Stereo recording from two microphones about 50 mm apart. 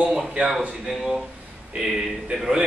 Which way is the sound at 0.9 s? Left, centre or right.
Centre.